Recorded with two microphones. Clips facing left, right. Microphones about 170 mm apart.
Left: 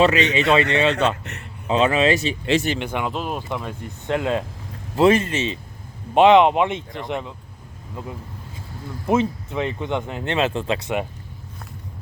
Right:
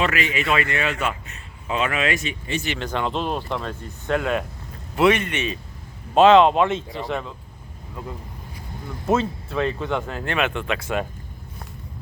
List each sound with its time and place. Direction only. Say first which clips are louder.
0.0 s speech: left 6 dB; 25° left (ahead or behind)
1.2 s a man's voice: left 6 dB; 70° left (ahead or behind)
1.6 s speech: left 6 dB; 30° left (ahead or behind)
2.7 s speech: even; 10° left (ahead or behind)
9.0 s speech: left 2 dB; 15° left (ahead or behind)